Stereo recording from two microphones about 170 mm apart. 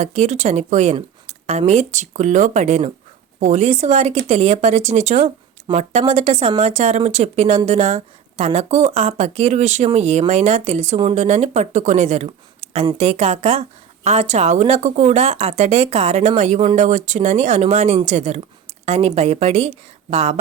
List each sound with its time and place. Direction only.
0.0 s speech: 40° right (ahead or behind)